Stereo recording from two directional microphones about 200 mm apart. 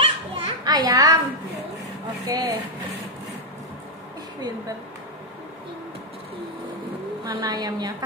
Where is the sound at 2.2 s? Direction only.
15° right (ahead or behind).